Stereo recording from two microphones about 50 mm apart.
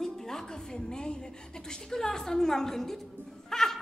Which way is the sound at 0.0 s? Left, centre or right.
Centre.